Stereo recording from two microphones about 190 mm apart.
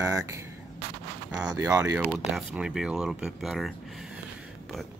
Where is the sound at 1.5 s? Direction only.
15° right (ahead or behind).